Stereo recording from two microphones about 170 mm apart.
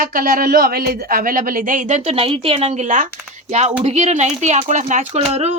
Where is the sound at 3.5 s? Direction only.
40° right (ahead or behind).